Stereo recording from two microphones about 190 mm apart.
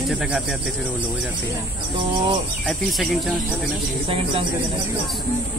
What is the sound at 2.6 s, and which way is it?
Speech, centre (ahead or behind).